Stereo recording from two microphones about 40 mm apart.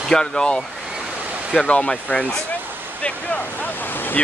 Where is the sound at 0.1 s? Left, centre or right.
Centre.